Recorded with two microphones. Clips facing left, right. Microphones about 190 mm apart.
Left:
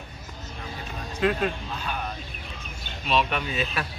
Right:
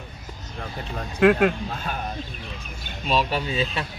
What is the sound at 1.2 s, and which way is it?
Speech, 70° right (ahead or behind).